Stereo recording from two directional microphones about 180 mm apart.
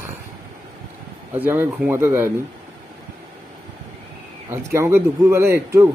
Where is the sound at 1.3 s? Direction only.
10° right (ahead or behind).